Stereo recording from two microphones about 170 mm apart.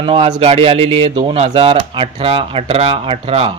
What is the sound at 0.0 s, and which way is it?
A man's voice, 30° right (ahead or behind).